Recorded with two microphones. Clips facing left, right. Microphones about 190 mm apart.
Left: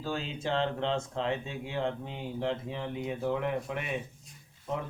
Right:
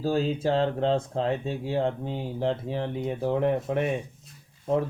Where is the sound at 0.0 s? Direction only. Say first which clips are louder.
Right 9 dB; 40° right (ahead or behind).